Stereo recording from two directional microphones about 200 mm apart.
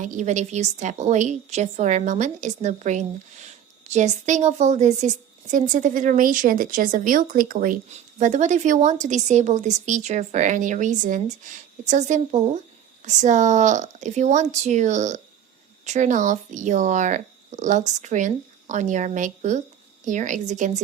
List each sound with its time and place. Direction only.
0.0 s a woman's voice: 40° right (ahead or behind)